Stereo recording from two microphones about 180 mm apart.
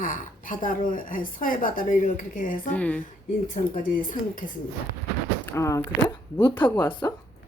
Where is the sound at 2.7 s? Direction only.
10° left (ahead or behind).